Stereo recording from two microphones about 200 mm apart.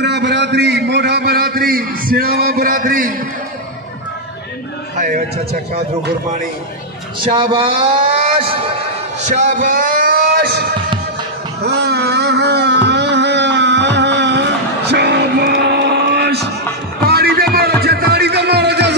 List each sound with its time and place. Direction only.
0.0 s a man's voice: 60° right (ahead or behind)
4.9 s a man's voice: 40° right (ahead or behind)
7.2 s speech: 25° right (ahead or behind)
9.2 s a sound: 35° right (ahead or behind); by 10.6 s 50° right (ahead or behind)
11.6 s a sound: 55° right (ahead or behind)
17.1 s music: 50° right (ahead or behind)